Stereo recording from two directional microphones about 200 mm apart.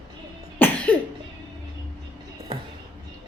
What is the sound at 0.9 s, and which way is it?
Cough, 10° left (ahead or behind).